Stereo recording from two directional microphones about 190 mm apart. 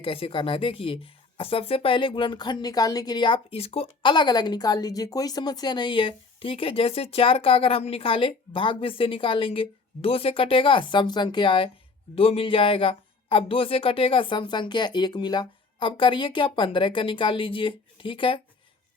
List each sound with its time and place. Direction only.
0.0 s speech: 30° left (ahead or behind)